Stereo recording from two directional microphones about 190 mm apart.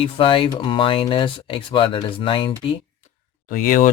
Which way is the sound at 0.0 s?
30° left (ahead or behind).